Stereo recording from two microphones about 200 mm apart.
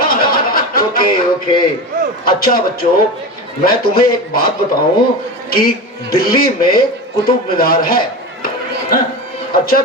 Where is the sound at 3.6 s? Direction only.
45° left (ahead or behind).